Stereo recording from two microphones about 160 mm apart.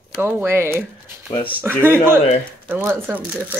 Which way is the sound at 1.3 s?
35° left (ahead or behind).